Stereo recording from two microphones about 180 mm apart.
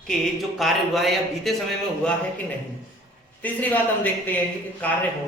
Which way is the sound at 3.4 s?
10° left (ahead or behind).